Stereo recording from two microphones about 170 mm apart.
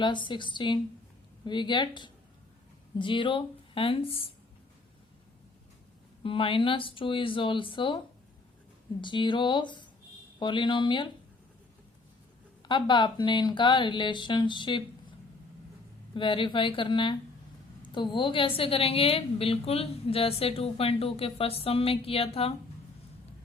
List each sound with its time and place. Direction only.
0.0 s speech: 30° left (ahead or behind)
6.2 s a woman's voice: 30° left (ahead or behind)
12.6 s speech: 30° left (ahead or behind)
16.1 s a woman's voice: 30° left (ahead or behind)